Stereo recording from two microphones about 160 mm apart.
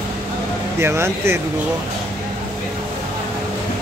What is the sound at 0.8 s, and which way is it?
Speech, 15° right (ahead or behind).